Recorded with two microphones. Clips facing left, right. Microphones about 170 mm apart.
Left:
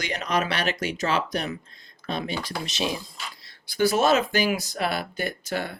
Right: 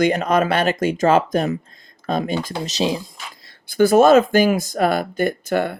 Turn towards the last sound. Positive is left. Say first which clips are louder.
# right 9 dB
turn(degrees=-55)  # may be behind; listen again after turning